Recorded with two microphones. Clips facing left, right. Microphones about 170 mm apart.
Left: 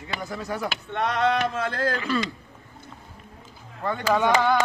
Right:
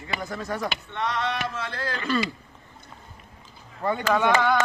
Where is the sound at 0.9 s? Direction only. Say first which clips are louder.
Left 7 dB; 55° left (ahead or behind).